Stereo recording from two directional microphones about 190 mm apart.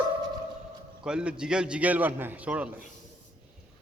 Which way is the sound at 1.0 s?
5° right (ahead or behind).